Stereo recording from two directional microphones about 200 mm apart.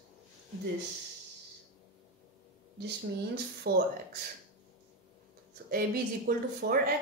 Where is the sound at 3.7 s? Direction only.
50° right (ahead or behind).